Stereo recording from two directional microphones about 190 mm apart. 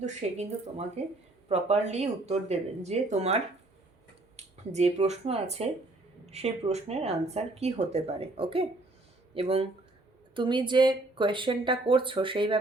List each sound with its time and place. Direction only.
0.0 s speech: 35° right (ahead or behind)
4.4 s speech: 35° right (ahead or behind)